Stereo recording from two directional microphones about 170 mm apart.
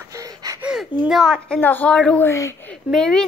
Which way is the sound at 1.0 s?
Centre (ahead or behind).